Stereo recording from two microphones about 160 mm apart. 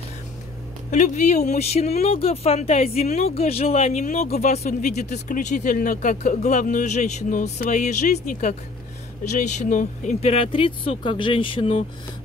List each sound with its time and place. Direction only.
0.9 s speech: 50° left (ahead or behind)